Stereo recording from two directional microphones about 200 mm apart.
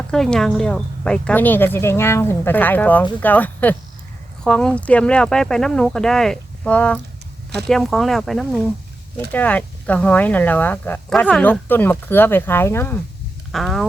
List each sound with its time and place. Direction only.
0.1 s speech: 5° left (ahead or behind)
13.5 s speech: centre (ahead or behind)